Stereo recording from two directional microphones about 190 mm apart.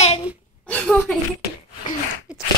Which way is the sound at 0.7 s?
5° left (ahead or behind).